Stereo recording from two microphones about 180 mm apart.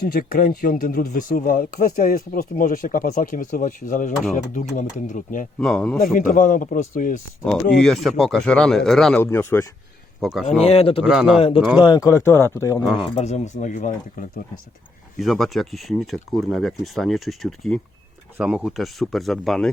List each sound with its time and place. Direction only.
0.0 s speech: 55° left (ahead or behind)
5.5 s speech: 5° left (ahead or behind)
6.1 s speech: 45° left (ahead or behind)
7.8 s speech: centre (ahead or behind)
9.2 s speech: 15° left (ahead or behind)
10.2 s speech: centre (ahead or behind)
10.6 s a man's voice: 35° left (ahead or behind)
11.0 s speech: 5° right (ahead or behind)
11.3 s a man's voice: 30° left (ahead or behind)
12.8 s speech: 5° right (ahead or behind)
13.1 s speech: 40° left (ahead or behind)
15.2 s speech: centre (ahead or behind)